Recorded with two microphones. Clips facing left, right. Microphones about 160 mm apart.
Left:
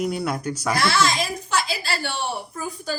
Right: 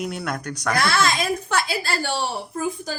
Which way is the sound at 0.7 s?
55° right (ahead or behind).